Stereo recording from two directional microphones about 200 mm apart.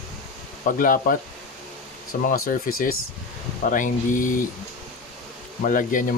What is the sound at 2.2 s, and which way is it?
Speech, 45° left (ahead or behind).